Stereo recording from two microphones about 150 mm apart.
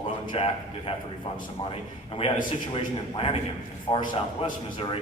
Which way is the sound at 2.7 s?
40° left (ahead or behind).